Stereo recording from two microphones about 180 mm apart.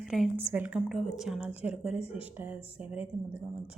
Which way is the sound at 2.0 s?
35° left (ahead or behind).